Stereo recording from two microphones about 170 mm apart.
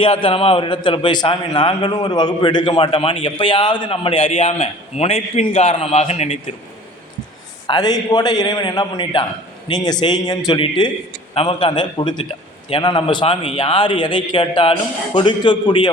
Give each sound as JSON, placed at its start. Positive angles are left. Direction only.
{"t": 0.0, "sound": "a man's voice", "side_deg": 30}
{"t": 7.7, "sound": "a man's voice", "side_deg": 25}